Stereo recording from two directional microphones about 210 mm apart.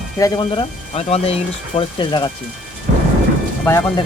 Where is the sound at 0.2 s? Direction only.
20° left (ahead or behind).